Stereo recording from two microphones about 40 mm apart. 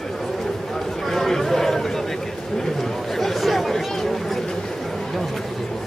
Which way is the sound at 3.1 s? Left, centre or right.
Centre.